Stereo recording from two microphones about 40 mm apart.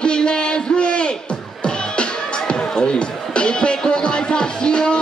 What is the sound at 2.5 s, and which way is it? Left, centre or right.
Music, left.